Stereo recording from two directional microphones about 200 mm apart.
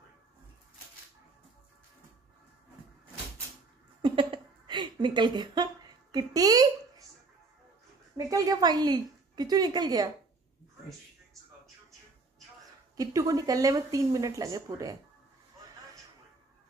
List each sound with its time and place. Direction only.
4.0 s a sound: 25° right (ahead or behind)
8.3 s a woman's voice: 15° right (ahead or behind)
12.9 s speech: 20° right (ahead or behind)